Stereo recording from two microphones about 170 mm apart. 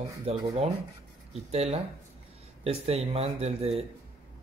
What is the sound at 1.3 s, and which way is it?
Speech, 40° right (ahead or behind).